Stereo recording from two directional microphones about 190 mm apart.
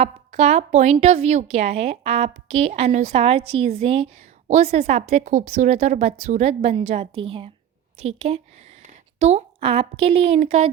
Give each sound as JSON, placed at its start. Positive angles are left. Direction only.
{"t": 0.0, "sound": "a woman's voice", "side_deg": -35}
{"t": 5.2, "sound": "a woman's voice", "side_deg": -45}